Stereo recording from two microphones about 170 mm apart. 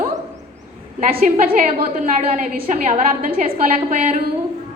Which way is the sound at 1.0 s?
55° right (ahead or behind).